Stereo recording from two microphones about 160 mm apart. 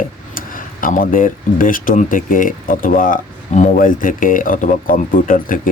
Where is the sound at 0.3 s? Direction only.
60° left (ahead or behind).